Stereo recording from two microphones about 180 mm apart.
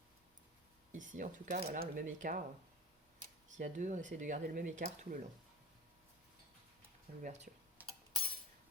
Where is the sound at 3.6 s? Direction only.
45° right (ahead or behind).